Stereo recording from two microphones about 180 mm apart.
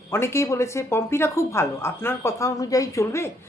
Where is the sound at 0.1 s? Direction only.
15° left (ahead or behind).